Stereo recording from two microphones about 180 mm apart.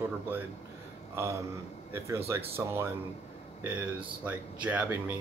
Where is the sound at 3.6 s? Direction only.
10° right (ahead or behind).